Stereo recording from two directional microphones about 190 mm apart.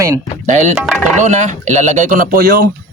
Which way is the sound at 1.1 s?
40° right (ahead or behind).